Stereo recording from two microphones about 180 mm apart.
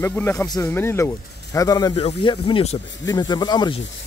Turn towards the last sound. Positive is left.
turn(degrees=25)  # may be behind; listen again after turning